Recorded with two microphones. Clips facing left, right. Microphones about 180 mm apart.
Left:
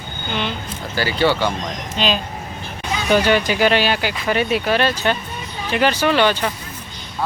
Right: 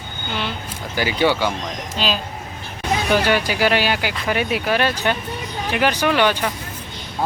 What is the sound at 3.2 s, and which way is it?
Speech, 10° right (ahead or behind).